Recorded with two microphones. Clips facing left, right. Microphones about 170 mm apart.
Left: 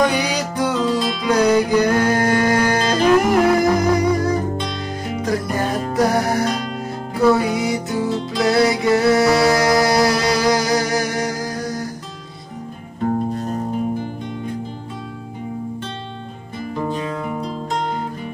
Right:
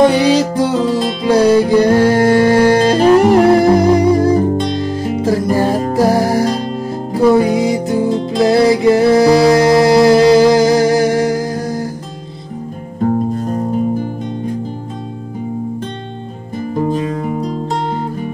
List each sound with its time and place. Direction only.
0.0 s music: 25° right (ahead or behind)
16.7 s music: 40° right (ahead or behind)